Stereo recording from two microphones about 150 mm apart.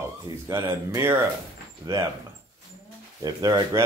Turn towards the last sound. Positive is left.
turn(degrees=-25)  # may be behind; listen again after turning